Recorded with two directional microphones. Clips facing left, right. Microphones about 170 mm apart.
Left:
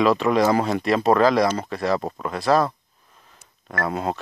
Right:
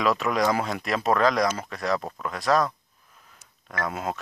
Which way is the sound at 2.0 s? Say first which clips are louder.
Left 5 dB; 30° left (ahead or behind).